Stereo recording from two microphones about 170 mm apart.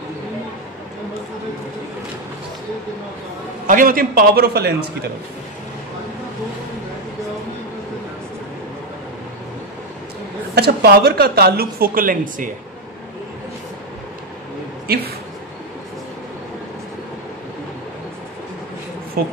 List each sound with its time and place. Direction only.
3.6 s speech: 55° right (ahead or behind)
10.5 s speech: 70° right (ahead or behind)
19.2 s speech: 65° right (ahead or behind)